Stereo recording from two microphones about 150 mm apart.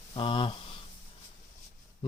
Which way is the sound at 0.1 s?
35° left (ahead or behind).